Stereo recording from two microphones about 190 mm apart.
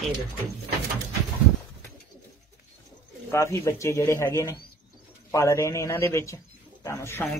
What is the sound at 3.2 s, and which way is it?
A man's voice, 15° left (ahead or behind).